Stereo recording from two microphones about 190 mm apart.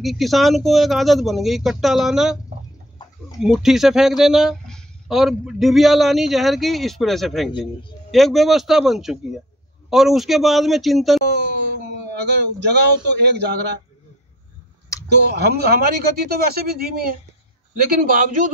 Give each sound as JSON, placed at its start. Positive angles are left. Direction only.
{"t": 0.0, "sound": "speech", "side_deg": 0}
{"t": 3.3, "sound": "speech", "side_deg": 0}
{"t": 11.2, "sound": "a sound", "side_deg": -65}
{"t": 12.1, "sound": "a man's voice", "side_deg": -65}
{"t": 15.0, "sound": "a man's voice", "side_deg": -60}